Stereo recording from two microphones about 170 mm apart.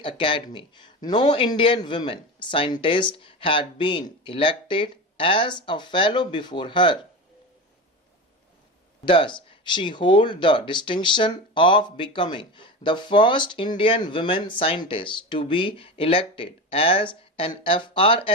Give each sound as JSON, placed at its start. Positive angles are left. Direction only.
{"t": 0.0, "sound": "speech", "side_deg": 30}
{"t": 9.0, "sound": "speech", "side_deg": 30}